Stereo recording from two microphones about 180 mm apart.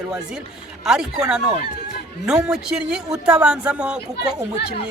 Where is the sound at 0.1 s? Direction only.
5° right (ahead or behind).